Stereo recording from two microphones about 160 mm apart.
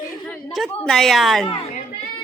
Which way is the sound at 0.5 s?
Centre (ahead or behind).